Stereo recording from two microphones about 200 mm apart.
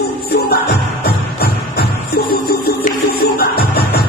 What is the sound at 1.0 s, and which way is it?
Music, 50° left (ahead or behind).